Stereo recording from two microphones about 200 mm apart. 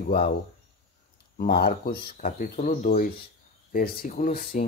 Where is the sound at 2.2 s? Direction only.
40° left (ahead or behind).